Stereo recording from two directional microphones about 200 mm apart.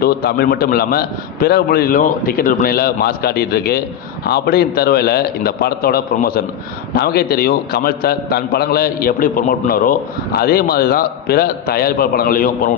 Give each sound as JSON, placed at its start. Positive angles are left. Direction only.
{"t": 0.0, "sound": "a man's voice", "side_deg": 50}